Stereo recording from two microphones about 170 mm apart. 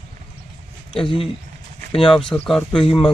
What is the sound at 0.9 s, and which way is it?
Speech, 30° left (ahead or behind).